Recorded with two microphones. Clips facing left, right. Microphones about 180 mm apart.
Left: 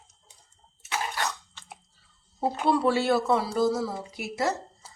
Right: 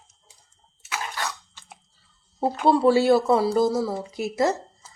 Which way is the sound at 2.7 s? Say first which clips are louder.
Right 6 dB; 35° right (ahead or behind).